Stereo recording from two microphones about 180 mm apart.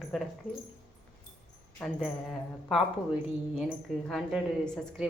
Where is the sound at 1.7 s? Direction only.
5° left (ahead or behind).